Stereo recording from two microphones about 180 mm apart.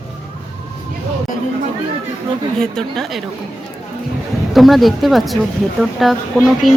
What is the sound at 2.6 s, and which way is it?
Speech, centre (ahead or behind).